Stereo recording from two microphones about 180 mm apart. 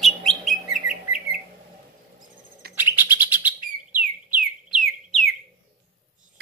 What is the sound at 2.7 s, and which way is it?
Bird, 10° right (ahead or behind).